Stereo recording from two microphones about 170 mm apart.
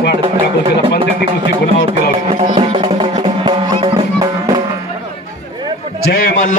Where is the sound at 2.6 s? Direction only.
35° right (ahead or behind).